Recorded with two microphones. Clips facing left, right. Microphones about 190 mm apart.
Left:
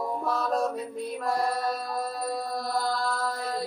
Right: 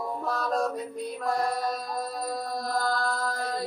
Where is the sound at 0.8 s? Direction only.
Centre (ahead or behind).